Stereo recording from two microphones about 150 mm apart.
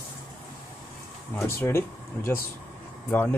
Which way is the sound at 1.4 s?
15° left (ahead or behind).